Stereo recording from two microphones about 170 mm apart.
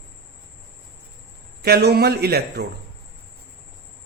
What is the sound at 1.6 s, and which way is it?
Speech, 70° right (ahead or behind).